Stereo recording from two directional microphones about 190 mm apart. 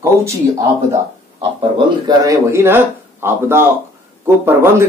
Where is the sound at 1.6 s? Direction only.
20° right (ahead or behind).